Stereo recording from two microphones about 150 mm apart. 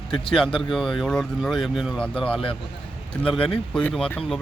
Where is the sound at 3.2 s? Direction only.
35° left (ahead or behind).